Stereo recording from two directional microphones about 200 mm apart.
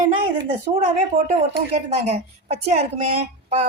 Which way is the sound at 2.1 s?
30° right (ahead or behind).